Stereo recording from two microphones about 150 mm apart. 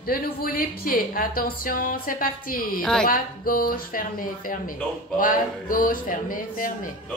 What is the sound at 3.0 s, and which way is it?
Speech, 70° left (ahead or behind).